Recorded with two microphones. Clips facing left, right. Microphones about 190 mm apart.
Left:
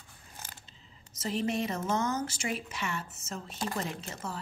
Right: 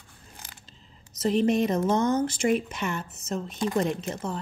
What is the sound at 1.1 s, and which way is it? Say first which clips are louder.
Speech: right 9 dB; 40° right (ahead or behind).